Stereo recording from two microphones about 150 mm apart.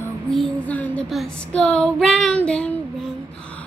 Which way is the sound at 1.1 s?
5° left (ahead or behind).